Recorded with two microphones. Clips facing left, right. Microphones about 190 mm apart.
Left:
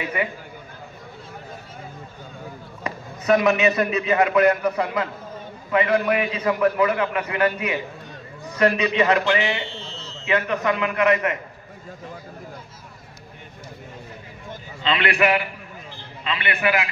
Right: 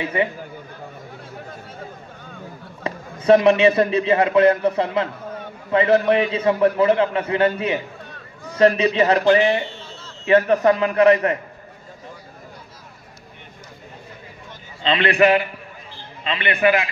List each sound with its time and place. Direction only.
0.0 s a man's voice: 30° right (ahead or behind)
2.8 s a man's voice: 30° right (ahead or behind)
14.8 s a man's voice: 30° right (ahead or behind)